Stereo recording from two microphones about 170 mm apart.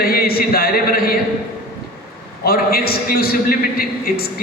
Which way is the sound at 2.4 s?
60° left (ahead or behind).